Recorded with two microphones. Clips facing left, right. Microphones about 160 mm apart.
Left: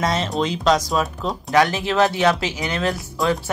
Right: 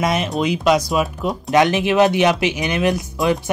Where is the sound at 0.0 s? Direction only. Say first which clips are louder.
Right 2 dB; 15° right (ahead or behind).